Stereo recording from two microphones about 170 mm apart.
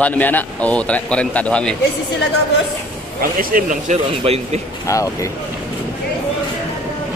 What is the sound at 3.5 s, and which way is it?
Speech, 50° right (ahead or behind).